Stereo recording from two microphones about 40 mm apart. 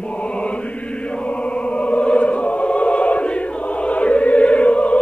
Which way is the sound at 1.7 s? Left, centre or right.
Left.